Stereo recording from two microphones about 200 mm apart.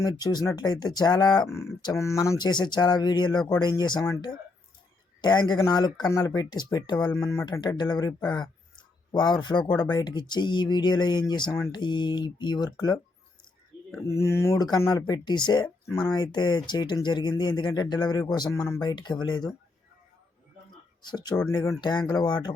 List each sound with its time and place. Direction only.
0.0 s speech: 20° left (ahead or behind)
9.1 s speech: 20° left (ahead or behind)
14.1 s speech: 15° left (ahead or behind)
21.0 s speech: 20° left (ahead or behind)